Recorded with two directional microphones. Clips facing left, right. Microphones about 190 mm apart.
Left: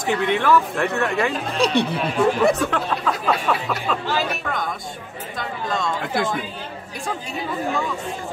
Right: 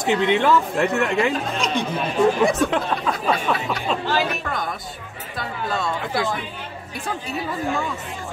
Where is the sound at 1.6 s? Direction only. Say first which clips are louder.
Left 4 dB; 35° left (ahead or behind).